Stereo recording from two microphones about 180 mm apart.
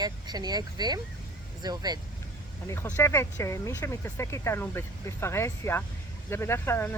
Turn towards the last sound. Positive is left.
turn(degrees=15)  # may be behind; listen again after turning